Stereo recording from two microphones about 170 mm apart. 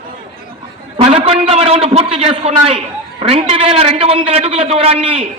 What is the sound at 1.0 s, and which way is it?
A man's voice, 35° right (ahead or behind).